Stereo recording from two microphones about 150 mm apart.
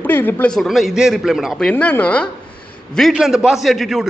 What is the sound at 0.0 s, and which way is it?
Speech, 15° left (ahead or behind).